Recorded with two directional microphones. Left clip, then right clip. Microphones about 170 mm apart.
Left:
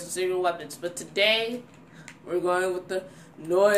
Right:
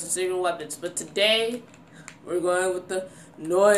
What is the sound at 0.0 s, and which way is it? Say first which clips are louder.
Speech: even; centre (ahead or behind).